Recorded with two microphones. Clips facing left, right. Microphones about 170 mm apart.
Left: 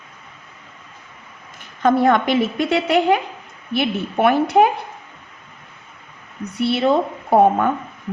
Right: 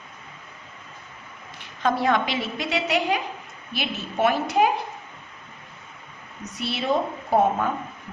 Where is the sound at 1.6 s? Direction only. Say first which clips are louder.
Left 7 dB; 55° left (ahead or behind).